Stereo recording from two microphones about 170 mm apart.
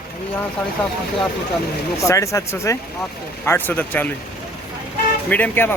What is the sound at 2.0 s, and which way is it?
Speech, 20° left (ahead or behind).